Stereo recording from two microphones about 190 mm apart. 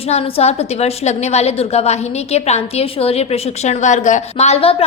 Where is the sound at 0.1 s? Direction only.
35° left (ahead or behind).